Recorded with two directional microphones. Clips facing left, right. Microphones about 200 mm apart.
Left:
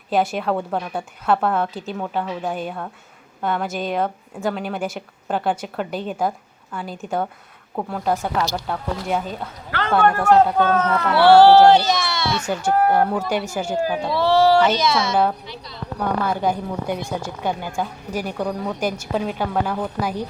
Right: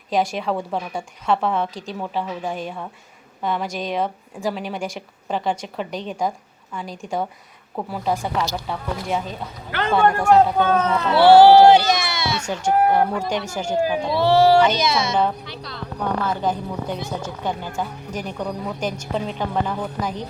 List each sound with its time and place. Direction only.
0.1 s a woman's voice: 5° left (ahead or behind)
10.0 s speech: 15° right (ahead or behind)
13.1 s a woman's voice: 5° left (ahead or behind)
13.7 s speech: 15° right (ahead or behind)
15.4 s a woman's voice: 75° right (ahead or behind)
16.0 s a woman's voice: 10° left (ahead or behind)